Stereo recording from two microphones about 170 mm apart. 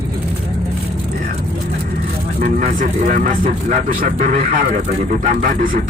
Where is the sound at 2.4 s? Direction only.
55° right (ahead or behind).